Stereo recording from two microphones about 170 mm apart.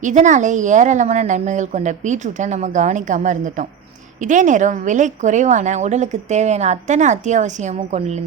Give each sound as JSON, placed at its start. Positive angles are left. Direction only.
{"t": 0.0, "sound": "a woman's voice", "side_deg": -45}